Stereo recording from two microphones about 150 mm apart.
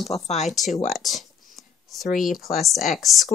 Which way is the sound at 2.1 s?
Centre (ahead or behind).